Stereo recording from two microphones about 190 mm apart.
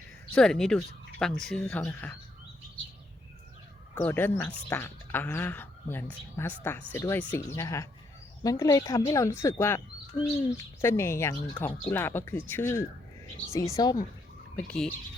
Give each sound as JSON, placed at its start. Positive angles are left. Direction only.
{"t": 0.3, "sound": "speech", "side_deg": 5}
{"t": 3.9, "sound": "speech", "side_deg": 10}